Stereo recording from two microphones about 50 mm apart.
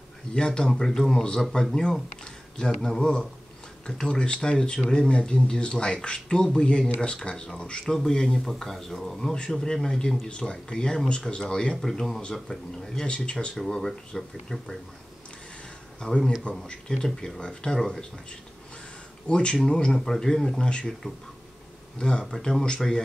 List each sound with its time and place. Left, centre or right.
0.3 s speech: centre
3.0 s speech: centre
9.3 s speech: centre
12.2 s speech: centre
13.6 s speech: centre
16.6 s speech: centre
17.7 s speech: centre
19.2 s speech: centre
20.6 s speech: left
22.3 s speech: centre